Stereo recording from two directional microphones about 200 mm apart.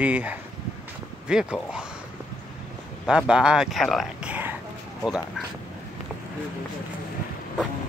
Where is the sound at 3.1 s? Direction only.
5° right (ahead or behind).